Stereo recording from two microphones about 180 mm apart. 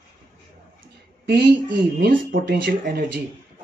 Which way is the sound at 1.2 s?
60° right (ahead or behind).